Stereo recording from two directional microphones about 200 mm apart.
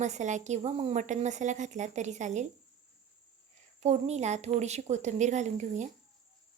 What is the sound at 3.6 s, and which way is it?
A woman's voice, 35° right (ahead or behind).